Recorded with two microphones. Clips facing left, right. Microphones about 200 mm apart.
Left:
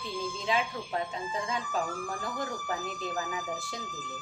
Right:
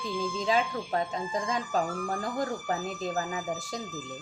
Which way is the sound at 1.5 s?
40° right (ahead or behind).